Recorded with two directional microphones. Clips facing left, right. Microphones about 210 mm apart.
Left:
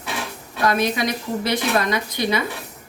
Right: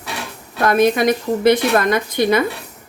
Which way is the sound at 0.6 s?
50° right (ahead or behind).